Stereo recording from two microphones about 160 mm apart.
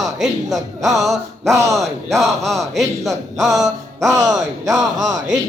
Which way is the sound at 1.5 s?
20° right (ahead or behind).